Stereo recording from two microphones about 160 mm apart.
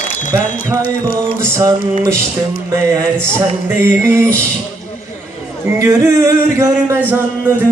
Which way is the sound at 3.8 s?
15° right (ahead or behind).